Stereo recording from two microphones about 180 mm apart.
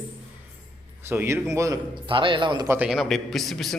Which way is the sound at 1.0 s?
15° right (ahead or behind).